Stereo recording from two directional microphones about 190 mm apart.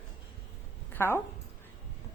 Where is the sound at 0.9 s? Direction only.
10° left (ahead or behind).